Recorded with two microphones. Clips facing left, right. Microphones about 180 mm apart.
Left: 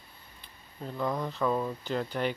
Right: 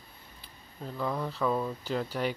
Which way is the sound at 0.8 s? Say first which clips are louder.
Left 1 dB; centre (ahead or behind).